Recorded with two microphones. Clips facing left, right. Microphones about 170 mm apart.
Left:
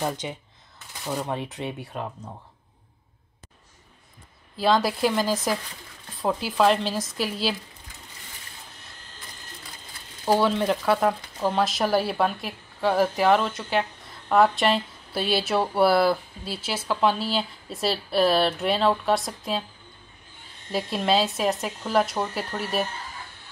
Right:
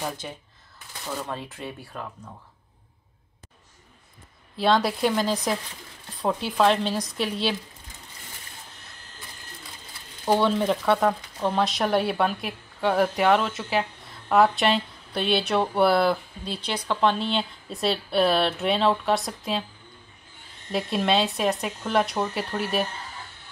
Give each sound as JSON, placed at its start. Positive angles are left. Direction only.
{"t": 0.2, "sound": "speech", "side_deg": 15}
{"t": 4.6, "sound": "speech", "side_deg": 0}
{"t": 10.2, "sound": "speech", "side_deg": 5}
{"t": 20.7, "sound": "speech", "side_deg": 0}